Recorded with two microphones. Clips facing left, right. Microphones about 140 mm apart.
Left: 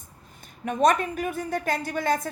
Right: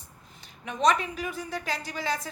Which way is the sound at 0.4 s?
50° left (ahead or behind).